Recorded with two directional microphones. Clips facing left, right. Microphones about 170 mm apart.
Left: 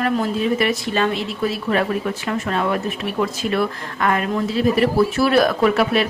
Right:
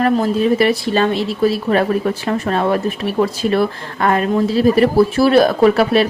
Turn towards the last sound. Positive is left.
turn(degrees=-35)  # may be behind; listen again after turning